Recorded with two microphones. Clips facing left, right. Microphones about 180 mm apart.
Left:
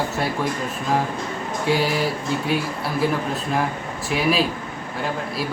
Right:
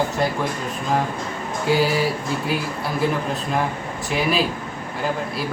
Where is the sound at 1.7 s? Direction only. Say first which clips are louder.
Right 2 dB; centre (ahead or behind).